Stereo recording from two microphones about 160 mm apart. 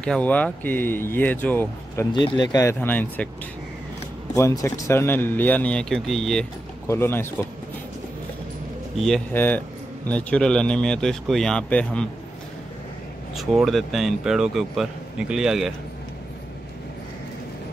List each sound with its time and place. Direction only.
0.0 s speech: 5° left (ahead or behind)
2.1 s speech: 30° left (ahead or behind); by 3.3 s 10° left (ahead or behind)
4.4 s speech: 20° left (ahead or behind); by 6.4 s centre (ahead or behind)
6.9 s speech: 15° left (ahead or behind)
8.9 s a man's voice: centre (ahead or behind)
9.3 s a man's voice: 10° left (ahead or behind)
13.4 s a man's voice: centre (ahead or behind)